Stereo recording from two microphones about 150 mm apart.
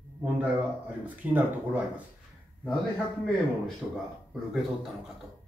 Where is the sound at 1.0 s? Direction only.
10° right (ahead or behind).